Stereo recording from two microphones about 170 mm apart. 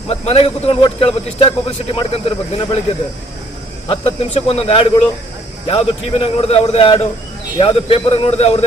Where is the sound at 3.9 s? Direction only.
35° left (ahead or behind).